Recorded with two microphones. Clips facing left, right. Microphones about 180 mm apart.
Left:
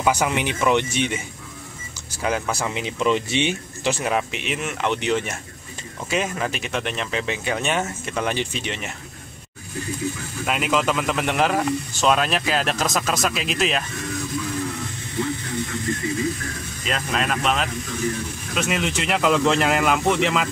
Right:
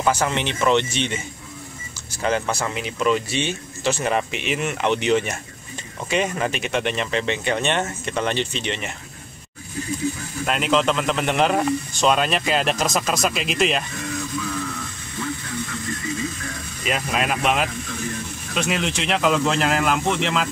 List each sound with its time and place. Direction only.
0.0 s speech: 10° left (ahead or behind)
2.7 s speech: 20° left (ahead or behind)
4.0 s speech: centre (ahead or behind)
10.4 s speech: 5° left (ahead or behind)
16.8 s speech: 10° right (ahead or behind)